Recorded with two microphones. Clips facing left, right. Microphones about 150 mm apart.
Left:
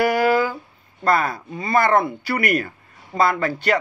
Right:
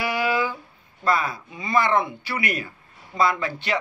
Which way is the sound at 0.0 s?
45° left (ahead or behind).